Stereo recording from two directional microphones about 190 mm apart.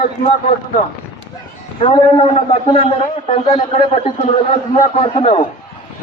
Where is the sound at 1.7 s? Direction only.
25° left (ahead or behind).